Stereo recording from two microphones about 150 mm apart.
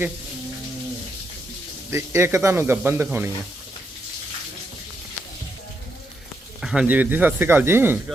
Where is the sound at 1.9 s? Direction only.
15° right (ahead or behind).